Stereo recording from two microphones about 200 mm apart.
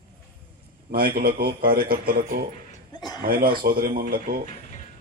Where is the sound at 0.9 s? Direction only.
50° right (ahead or behind).